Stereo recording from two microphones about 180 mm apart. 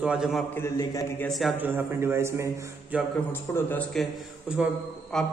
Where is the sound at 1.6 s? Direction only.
15° right (ahead or behind).